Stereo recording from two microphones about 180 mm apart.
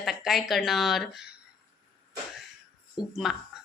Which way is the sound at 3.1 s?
Centre (ahead or behind).